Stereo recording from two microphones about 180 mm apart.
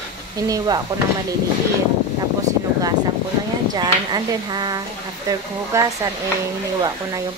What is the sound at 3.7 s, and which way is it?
Speech, 20° right (ahead or behind).